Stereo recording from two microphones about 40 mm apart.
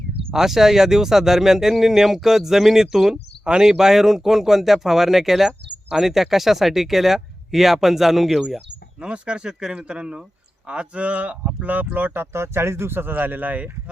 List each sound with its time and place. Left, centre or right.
0.3 s speech: centre
5.5 s speech: centre
6.1 s speech: centre
9.0 s speech: right
12.2 s speech: right